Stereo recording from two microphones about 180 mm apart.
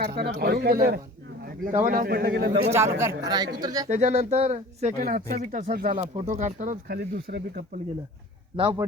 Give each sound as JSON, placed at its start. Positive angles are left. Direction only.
{"t": 0.0, "sound": "a man's voice", "side_deg": -60}
{"t": 2.3, "sound": "a man's voice", "side_deg": -90}
{"t": 3.2, "sound": "speech", "side_deg": -20}
{"t": 3.8, "sound": "speech", "side_deg": -40}
{"t": 5.0, "sound": "a man's voice", "side_deg": -50}
{"t": 5.7, "sound": "a man's voice", "side_deg": -55}
{"t": 6.0, "sound": "speech", "side_deg": -40}
{"t": 6.8, "sound": "speech", "side_deg": -60}
{"t": 8.5, "sound": "speech", "side_deg": -30}